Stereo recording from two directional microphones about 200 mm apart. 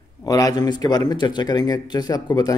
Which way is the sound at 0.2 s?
20° left (ahead or behind).